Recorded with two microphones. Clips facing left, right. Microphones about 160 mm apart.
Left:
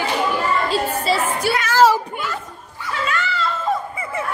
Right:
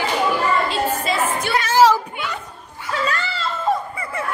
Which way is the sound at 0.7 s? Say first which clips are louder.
Left 1 dB; 35° left (ahead or behind).